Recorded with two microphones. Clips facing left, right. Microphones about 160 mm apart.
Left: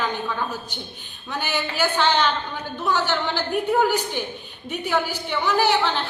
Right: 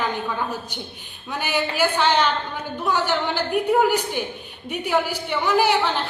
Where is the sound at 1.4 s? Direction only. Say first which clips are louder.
Right 3 dB; 5° right (ahead or behind).